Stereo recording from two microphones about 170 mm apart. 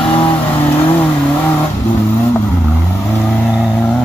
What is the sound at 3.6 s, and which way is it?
Vehicle, 5° left (ahead or behind).